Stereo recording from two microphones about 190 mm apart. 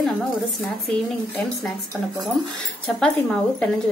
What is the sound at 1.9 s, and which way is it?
A woman's voice, 5° left (ahead or behind).